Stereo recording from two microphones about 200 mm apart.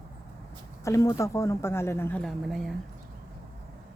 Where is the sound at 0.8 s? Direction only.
15° left (ahead or behind).